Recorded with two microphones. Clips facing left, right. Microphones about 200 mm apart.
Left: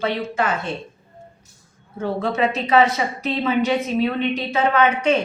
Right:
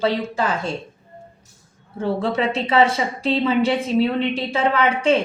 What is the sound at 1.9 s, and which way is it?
A woman's voice, 30° right (ahead or behind).